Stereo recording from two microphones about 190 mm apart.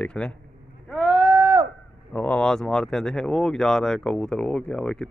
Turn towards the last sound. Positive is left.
turn(degrees=5)  # may be behind; listen again after turning